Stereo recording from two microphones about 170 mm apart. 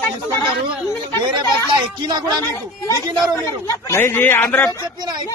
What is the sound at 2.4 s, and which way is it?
A man's voice, 15° left (ahead or behind).